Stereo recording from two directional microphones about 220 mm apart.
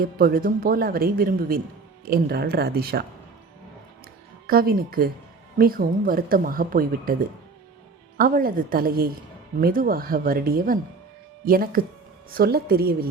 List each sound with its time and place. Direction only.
0.0 s speech: 45° right (ahead or behind)
4.4 s speech: 45° right (ahead or behind)
8.2 s speech: 40° right (ahead or behind)